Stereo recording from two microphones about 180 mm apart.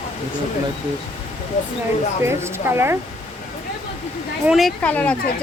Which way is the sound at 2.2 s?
15° right (ahead or behind).